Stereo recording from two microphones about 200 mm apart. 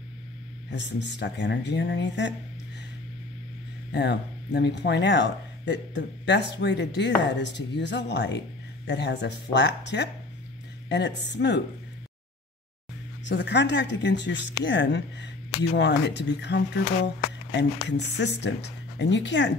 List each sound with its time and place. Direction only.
0.7 s speech: 60° left (ahead or behind)
3.9 s speech: 60° left (ahead or behind)
13.2 s speech: 60° left (ahead or behind)